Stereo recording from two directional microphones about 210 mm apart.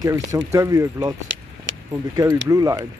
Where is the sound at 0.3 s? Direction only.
15° right (ahead or behind).